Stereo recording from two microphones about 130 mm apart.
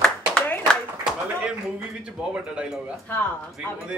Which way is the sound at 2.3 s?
10° right (ahead or behind).